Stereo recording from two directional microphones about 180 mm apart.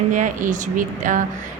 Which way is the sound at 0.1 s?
45° right (ahead or behind).